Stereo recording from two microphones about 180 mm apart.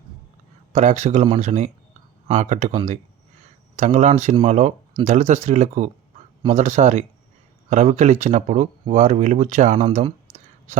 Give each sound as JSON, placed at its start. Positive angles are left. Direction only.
{"t": 0.7, "sound": "speech", "side_deg": -40}
{"t": 3.8, "sound": "speech", "side_deg": -40}